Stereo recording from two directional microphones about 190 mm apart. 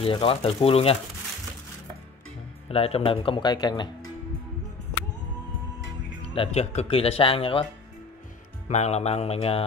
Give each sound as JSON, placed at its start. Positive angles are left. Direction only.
{"t": 0.0, "sound": "speech", "side_deg": 30}
{"t": 2.7, "sound": "speech", "side_deg": 30}
{"t": 6.2, "sound": "speech", "side_deg": 30}
{"t": 8.6, "sound": "mantra", "side_deg": 35}